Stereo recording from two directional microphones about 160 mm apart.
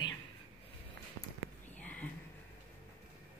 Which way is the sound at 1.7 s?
10° left (ahead or behind).